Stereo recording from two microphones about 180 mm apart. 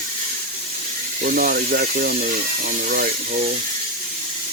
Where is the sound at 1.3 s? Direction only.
50° right (ahead or behind).